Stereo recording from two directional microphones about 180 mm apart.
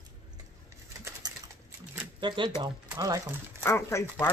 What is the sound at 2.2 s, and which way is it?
Speech, 25° right (ahead or behind).